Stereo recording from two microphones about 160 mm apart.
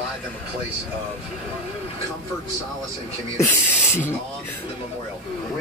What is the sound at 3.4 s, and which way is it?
Speech, 15° left (ahead or behind).